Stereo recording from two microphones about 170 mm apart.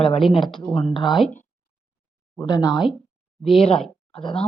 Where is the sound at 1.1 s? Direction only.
5° left (ahead or behind).